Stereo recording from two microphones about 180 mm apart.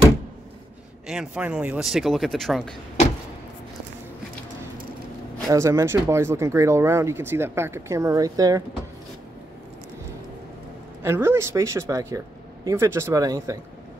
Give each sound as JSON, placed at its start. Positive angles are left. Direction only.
{"t": 1.0, "sound": "speech", "side_deg": -5}
{"t": 5.5, "sound": "speech", "side_deg": -15}
{"t": 11.0, "sound": "speech", "side_deg": -15}